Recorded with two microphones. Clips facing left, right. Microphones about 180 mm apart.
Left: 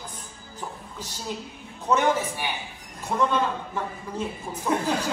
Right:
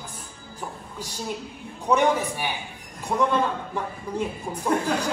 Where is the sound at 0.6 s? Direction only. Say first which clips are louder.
Right 1 dB; 10° right (ahead or behind).